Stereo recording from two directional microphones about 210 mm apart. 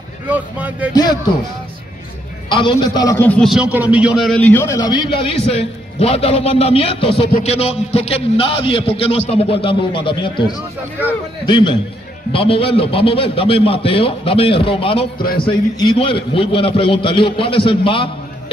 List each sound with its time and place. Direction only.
0.3 s speech: 5° right (ahead or behind)
0.9 s a man's voice: 20° left (ahead or behind)
2.5 s a man's voice: 20° left (ahead or behind)
15.1 s a man's voice: 45° left (ahead or behind)
15.4 s a man's voice: 25° left (ahead or behind)